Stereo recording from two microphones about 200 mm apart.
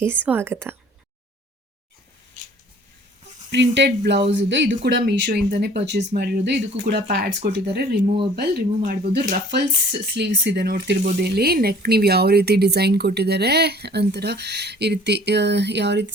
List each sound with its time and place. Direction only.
0.0 s a woman's voice: 10° right (ahead or behind)
3.5 s speech: 60° right (ahead or behind)